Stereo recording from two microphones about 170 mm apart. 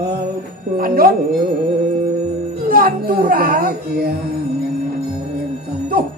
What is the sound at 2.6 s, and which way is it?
Music, 55° right (ahead or behind).